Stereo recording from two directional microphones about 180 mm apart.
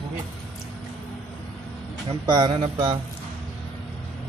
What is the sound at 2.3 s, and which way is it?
Speech, 25° right (ahead or behind).